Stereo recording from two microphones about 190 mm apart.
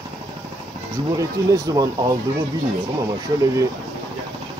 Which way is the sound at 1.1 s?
20° right (ahead or behind).